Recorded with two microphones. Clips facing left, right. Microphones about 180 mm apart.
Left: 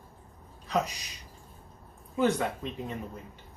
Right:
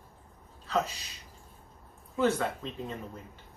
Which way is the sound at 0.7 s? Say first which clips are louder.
Left 1 dB; 15° left (ahead or behind).